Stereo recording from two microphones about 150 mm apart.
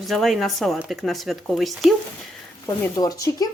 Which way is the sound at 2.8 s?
25° left (ahead or behind).